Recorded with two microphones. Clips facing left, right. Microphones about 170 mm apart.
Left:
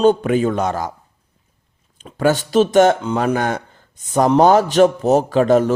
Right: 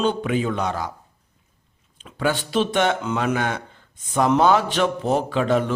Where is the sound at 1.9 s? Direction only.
45° left (ahead or behind).